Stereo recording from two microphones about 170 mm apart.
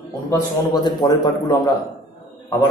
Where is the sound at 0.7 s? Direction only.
25° left (ahead or behind).